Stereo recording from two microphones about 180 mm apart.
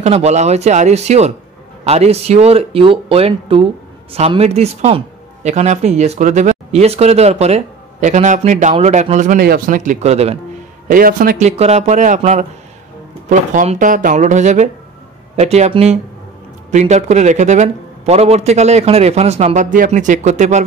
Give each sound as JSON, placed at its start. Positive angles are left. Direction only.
{"t": 0.0, "sound": "speech", "side_deg": -35}
{"t": 9.8, "sound": "speech", "side_deg": -40}
{"t": 10.9, "sound": "speech", "side_deg": -50}